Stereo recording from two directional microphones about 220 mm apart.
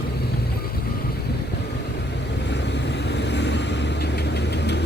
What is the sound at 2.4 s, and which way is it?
Vehicle, 50° left (ahead or behind).